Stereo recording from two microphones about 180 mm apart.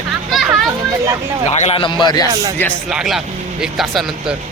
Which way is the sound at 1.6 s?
35° left (ahead or behind).